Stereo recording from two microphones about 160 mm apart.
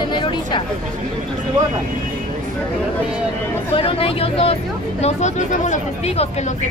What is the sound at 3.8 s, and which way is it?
Speech, 35° left (ahead or behind).